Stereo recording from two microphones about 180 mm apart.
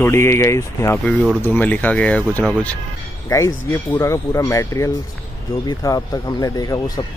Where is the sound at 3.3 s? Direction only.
15° left (ahead or behind).